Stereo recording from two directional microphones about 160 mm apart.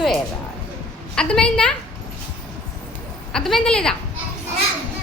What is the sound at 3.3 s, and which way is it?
Speech, 5° left (ahead or behind).